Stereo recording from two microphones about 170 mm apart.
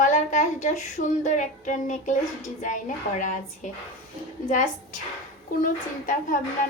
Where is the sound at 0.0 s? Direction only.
45° left (ahead or behind).